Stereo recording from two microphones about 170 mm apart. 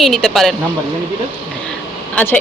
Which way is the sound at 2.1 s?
10° left (ahead or behind).